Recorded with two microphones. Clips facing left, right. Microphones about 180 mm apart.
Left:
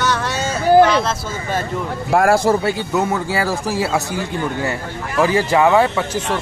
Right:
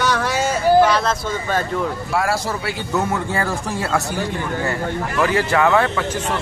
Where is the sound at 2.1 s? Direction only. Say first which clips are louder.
Left 11 dB; 50° left (ahead or behind).